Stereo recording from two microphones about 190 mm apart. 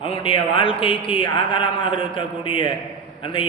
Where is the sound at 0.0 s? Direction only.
30° left (ahead or behind).